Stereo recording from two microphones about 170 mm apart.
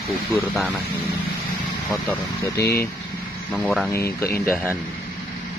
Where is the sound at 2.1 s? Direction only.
15° left (ahead or behind).